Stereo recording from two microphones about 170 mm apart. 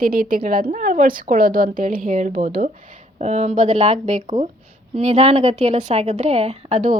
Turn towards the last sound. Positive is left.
turn(degrees=-45)  # may be behind; listen again after turning